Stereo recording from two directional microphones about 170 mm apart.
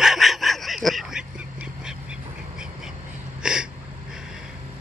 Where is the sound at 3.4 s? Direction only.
5° right (ahead or behind).